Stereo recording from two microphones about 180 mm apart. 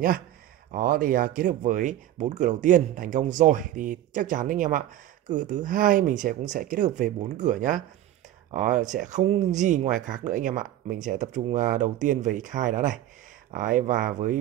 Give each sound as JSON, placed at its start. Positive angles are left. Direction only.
{"t": 0.7, "sound": "speech", "side_deg": -50}